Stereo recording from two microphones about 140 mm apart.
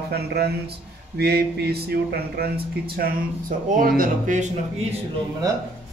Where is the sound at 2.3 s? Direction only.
90° right; by 4.8 s 60° right (ahead or behind).